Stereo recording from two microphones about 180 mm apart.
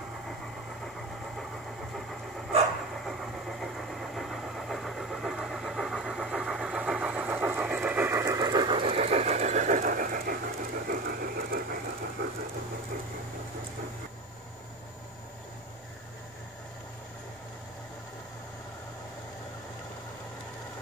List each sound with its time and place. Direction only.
3.1 s vehicle: centre (ahead or behind); by 11.8 s 55° right (ahead or behind)